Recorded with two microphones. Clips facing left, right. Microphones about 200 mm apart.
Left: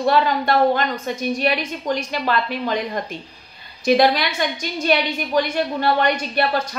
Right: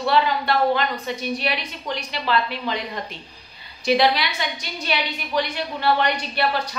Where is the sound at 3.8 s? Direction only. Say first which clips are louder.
Left 3 dB; 45° left (ahead or behind).